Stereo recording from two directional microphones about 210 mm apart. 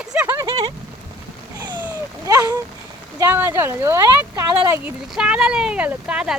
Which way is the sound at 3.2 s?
10° right (ahead or behind).